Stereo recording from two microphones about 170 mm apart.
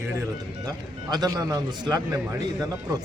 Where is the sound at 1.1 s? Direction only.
20° right (ahead or behind).